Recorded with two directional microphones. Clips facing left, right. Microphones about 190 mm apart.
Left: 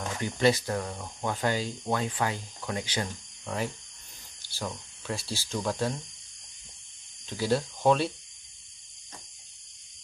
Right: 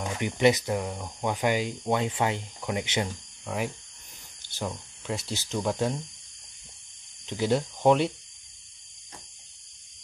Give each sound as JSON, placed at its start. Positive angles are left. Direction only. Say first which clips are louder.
{"t": 0.0, "sound": "speech", "louder": "right 2 dB", "side_deg": -15}
{"t": 7.2, "sound": "speech", "louder": "right 2 dB", "side_deg": -20}